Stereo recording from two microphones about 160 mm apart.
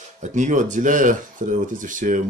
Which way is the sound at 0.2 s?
50° right (ahead or behind).